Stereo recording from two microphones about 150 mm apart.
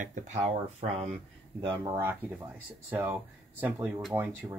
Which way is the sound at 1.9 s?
15° right (ahead or behind).